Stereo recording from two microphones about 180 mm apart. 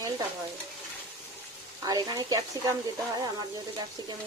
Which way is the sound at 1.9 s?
20° right (ahead or behind).